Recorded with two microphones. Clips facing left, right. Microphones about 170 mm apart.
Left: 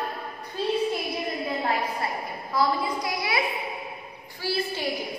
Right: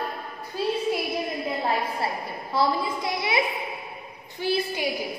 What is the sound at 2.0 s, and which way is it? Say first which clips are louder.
A woman's voice: right 1 dB; 30° right (ahead or behind).